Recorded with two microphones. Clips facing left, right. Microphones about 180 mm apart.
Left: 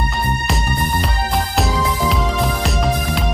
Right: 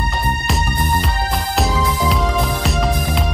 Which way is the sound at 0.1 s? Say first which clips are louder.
Even; centre (ahead or behind).